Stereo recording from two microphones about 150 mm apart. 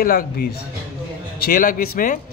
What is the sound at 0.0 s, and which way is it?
A man's voice, 80° left.